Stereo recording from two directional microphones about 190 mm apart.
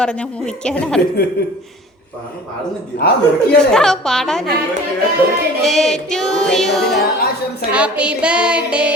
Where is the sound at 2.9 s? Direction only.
60° left (ahead or behind).